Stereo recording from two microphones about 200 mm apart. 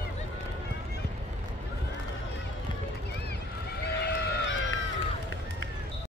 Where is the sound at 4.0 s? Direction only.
55° left (ahead or behind).